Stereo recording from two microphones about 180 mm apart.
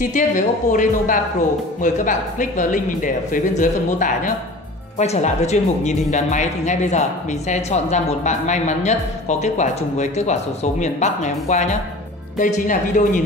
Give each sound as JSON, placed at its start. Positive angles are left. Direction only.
{"t": 0.0, "sound": "speech", "side_deg": 45}